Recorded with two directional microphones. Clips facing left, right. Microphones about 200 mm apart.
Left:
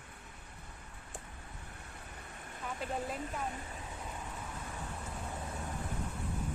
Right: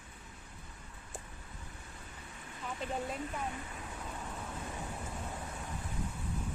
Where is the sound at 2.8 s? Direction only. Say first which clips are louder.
Even; centre (ahead or behind).